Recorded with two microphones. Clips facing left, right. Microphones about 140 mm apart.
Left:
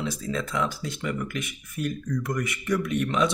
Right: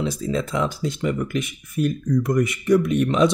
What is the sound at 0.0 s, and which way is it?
Speech, 25° right (ahead or behind).